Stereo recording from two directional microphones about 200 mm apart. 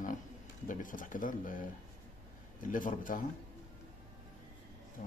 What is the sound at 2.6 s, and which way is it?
Speech, 40° left (ahead or behind).